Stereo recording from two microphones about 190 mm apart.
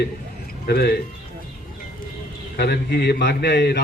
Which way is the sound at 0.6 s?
55° left (ahead or behind).